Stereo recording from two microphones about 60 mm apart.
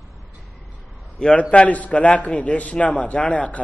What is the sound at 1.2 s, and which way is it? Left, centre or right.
A man's voice, centre.